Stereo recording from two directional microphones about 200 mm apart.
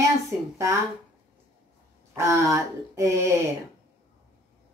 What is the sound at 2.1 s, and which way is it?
Speech, 15° right (ahead or behind).